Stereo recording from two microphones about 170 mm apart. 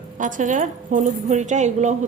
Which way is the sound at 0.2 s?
50° right (ahead or behind).